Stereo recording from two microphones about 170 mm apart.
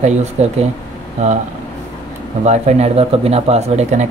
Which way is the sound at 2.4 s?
40° right (ahead or behind).